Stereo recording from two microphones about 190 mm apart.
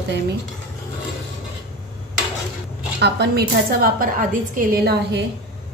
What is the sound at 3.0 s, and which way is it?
A woman's voice, 60° right (ahead or behind).